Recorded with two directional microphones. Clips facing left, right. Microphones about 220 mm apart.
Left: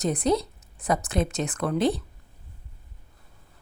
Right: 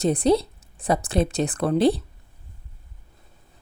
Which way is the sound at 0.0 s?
30° right (ahead or behind).